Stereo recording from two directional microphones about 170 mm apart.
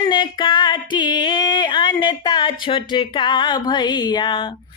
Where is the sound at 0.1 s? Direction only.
25° left (ahead or behind).